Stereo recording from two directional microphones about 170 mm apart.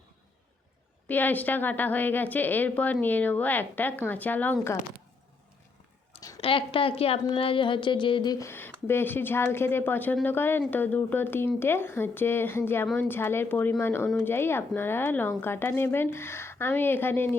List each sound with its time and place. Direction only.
1.0 s a woman's voice: 10° left (ahead or behind)
6.4 s a woman's voice: 30° left (ahead or behind); by 17.2 s 10° left (ahead or behind)